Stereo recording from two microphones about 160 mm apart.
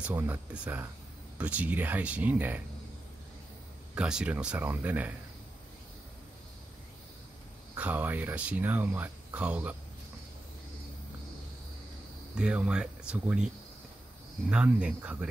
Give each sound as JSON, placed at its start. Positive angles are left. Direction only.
{"t": 0.0, "sound": "speech", "side_deg": -10}
{"t": 3.9, "sound": "speech", "side_deg": -5}
{"t": 7.7, "sound": "speech", "side_deg": -10}
{"t": 12.4, "sound": "speech", "side_deg": -5}
{"t": 14.5, "sound": "speech", "side_deg": -5}